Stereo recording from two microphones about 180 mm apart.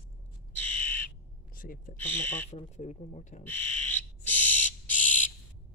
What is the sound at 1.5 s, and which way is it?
Speech, 50° left (ahead or behind).